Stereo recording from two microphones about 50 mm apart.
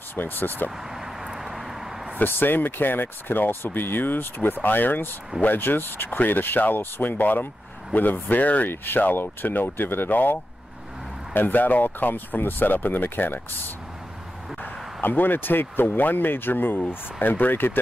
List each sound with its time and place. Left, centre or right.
0.1 s speech: left
0.9 s vehicle: centre
2.1 s speech: left